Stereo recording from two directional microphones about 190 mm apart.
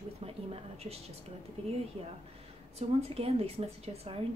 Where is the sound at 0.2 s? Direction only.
30° right (ahead or behind).